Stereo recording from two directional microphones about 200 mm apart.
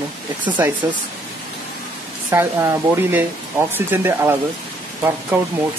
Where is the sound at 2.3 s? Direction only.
15° right (ahead or behind).